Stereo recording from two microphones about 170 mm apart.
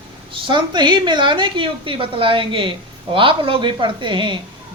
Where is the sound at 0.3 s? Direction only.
30° right (ahead or behind).